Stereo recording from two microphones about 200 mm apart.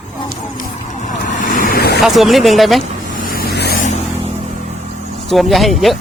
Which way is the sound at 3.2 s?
45° left (ahead or behind).